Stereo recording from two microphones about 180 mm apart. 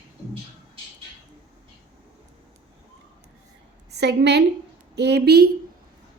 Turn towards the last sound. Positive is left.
turn(degrees=-60)  # may be behind; listen again after turning